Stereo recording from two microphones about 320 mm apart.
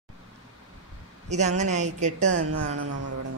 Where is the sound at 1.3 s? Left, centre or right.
Right.